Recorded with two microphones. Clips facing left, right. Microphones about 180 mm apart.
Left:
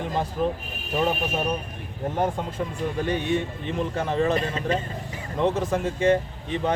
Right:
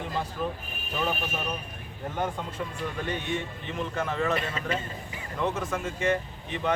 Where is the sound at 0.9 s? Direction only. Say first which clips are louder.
Left 6 dB; 40° left (ahead or behind).